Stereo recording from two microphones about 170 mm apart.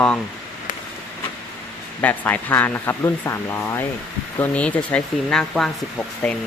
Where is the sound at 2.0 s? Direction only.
10° left (ahead or behind).